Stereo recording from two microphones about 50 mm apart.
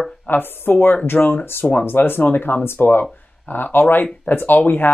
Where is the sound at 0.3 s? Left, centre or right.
Left.